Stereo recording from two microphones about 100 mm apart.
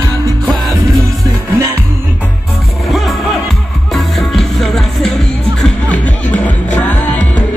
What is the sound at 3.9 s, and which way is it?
Music, centre (ahead or behind).